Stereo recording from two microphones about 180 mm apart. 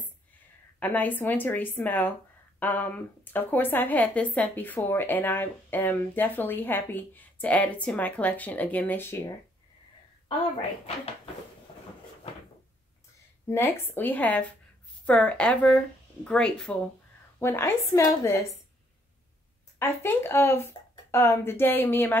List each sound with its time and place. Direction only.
0.7 s a woman's voice: 10° left (ahead or behind)
10.9 s speech: 35° left (ahead or behind)
13.5 s a woman's voice: 15° left (ahead or behind)
19.8 s a woman's voice: 15° left (ahead or behind)